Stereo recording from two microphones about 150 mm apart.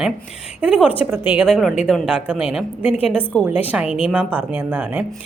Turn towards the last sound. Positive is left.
turn(degrees=-10)  # may be behind; listen again after turning